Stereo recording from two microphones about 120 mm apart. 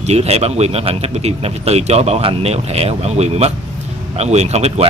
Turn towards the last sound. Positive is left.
turn(degrees=-65)  # may be behind; listen again after turning